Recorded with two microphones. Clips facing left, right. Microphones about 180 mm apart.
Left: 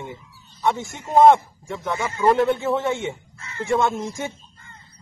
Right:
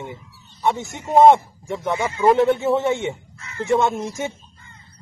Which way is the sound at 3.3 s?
30° left (ahead or behind).